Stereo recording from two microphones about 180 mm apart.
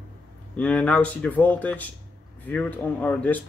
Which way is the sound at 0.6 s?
5° left (ahead or behind).